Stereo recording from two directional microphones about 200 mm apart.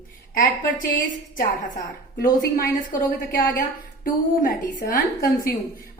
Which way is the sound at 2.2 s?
45° left (ahead or behind).